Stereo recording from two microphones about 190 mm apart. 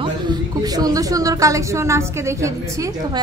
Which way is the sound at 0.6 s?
20° right (ahead or behind).